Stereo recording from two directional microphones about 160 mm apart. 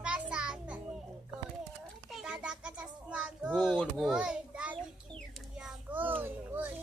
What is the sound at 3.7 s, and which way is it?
A child's voice, centre (ahead or behind).